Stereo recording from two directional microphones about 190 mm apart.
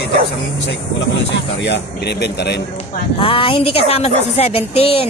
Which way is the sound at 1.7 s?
65° left (ahead or behind).